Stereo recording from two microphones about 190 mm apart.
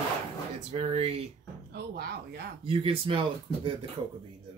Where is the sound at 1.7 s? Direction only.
55° right (ahead or behind).